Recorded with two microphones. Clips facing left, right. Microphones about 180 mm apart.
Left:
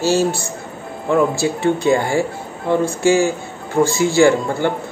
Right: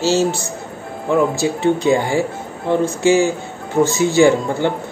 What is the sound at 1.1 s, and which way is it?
A man's voice, 15° right (ahead or behind).